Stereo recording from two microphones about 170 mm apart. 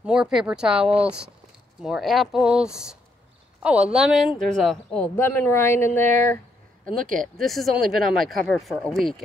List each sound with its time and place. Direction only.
0.0 s speech: 5° right (ahead or behind); by 5.9 s 15° left (ahead or behind)
7.0 s speech: 55° right (ahead or behind)
7.3 s speech: centre (ahead or behind)